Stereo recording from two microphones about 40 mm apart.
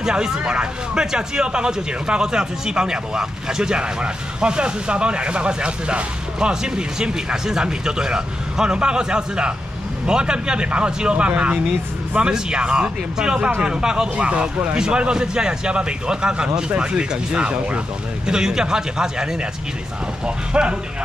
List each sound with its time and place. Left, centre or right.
0.0 s speech: right
14.8 s speech: right
20.2 s speech: right